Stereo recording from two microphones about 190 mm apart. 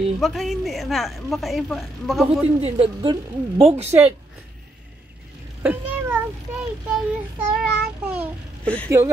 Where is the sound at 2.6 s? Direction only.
30° right (ahead or behind).